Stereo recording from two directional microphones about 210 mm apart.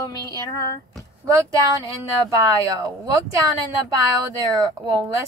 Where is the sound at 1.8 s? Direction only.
15° right (ahead or behind).